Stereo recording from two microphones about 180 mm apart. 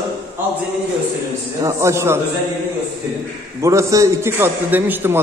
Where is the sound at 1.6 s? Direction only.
15° right (ahead or behind).